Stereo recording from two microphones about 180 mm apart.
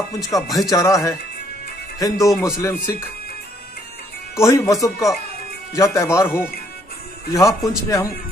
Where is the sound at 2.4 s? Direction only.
15° left (ahead or behind).